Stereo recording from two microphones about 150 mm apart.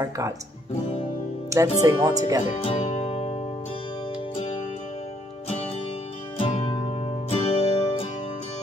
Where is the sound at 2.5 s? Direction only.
40° left (ahead or behind).